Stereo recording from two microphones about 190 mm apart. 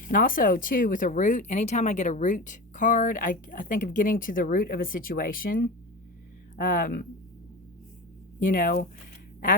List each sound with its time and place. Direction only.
0.0 s speech: 45° left (ahead or behind)
8.4 s speech: 45° left (ahead or behind)